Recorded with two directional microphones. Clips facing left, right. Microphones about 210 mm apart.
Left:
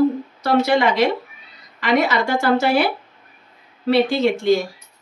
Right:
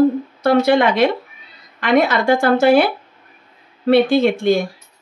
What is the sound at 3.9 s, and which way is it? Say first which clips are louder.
Speech: right 4 dB; 55° right (ahead or behind).